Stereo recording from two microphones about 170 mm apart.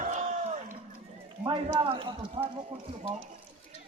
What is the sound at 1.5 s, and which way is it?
Speech, 30° right (ahead or behind).